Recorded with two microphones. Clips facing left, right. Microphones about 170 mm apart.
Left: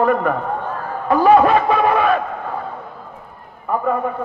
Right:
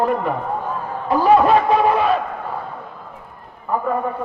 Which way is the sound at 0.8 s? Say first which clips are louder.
Left 4 dB; 60° left (ahead or behind).